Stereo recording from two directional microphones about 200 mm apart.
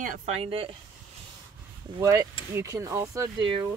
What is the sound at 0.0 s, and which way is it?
Speech, 40° right (ahead or behind).